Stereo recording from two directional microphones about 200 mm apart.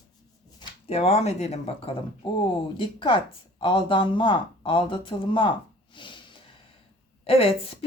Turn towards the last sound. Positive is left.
turn(degrees=30)  # may be behind; listen again after turning